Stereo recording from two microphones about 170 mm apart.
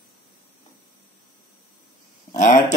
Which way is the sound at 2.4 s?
45° left (ahead or behind).